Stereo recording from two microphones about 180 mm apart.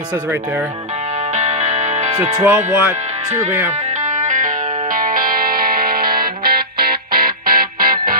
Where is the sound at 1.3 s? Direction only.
40° right (ahead or behind).